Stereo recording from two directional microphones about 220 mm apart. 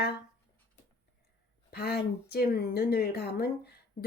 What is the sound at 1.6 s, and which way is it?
Speech, 45° left (ahead or behind).